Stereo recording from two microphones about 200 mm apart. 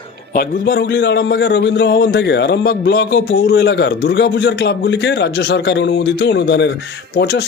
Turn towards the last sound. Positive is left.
turn(degrees=55)  # may be behind; listen again after turning